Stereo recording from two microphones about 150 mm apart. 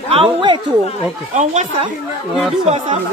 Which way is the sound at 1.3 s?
50° right (ahead or behind).